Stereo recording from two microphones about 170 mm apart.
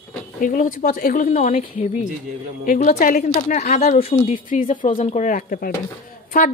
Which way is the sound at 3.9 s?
35° left (ahead or behind).